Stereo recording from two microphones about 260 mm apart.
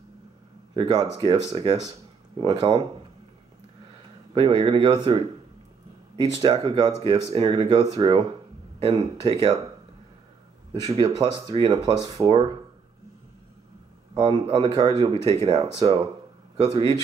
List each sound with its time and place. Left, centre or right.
0.7 s speech: centre
4.3 s speech: centre
10.7 s speech: centre
14.1 s speech: centre
16.7 s speech: centre